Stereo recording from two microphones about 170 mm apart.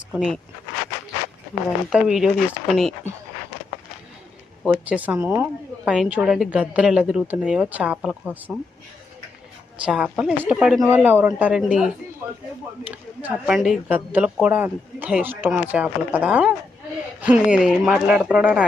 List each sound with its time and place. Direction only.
0.1 s speech: 5° right (ahead or behind)
1.9 s speech: 5° right (ahead or behind)
4.6 s a woman's voice: 5° right (ahead or behind)
9.8 s a woman's voice: 5° right (ahead or behind)
13.2 s a woman's voice: 5° right (ahead or behind)